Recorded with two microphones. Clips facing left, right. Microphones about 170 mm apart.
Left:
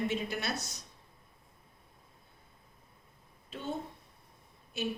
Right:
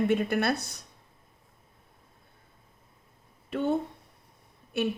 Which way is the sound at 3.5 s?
60° right (ahead or behind).